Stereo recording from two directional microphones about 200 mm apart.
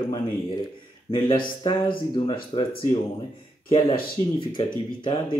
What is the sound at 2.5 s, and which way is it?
Speech, 25° left (ahead or behind).